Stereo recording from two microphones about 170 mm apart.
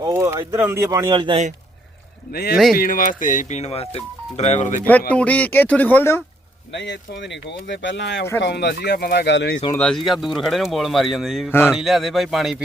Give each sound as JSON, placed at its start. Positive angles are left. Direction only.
{"t": 0.0, "sound": "speech", "side_deg": -15}
{"t": 2.3, "sound": "speech", "side_deg": 65}
{"t": 5.1, "sound": "speech", "side_deg": 10}
{"t": 6.7, "sound": "speech", "side_deg": 90}
{"t": 9.7, "sound": "speech", "side_deg": 5}